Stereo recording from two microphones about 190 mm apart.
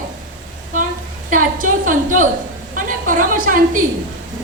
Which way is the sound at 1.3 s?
45° right (ahead or behind).